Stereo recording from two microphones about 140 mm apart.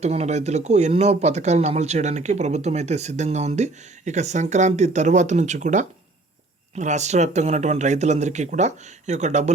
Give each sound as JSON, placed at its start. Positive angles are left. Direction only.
{"t": 0.0, "sound": "speech", "side_deg": -50}